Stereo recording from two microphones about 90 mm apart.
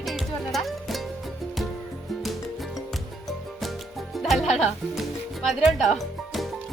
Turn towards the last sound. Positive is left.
turn(degrees=0)  # may be behind; listen again after turning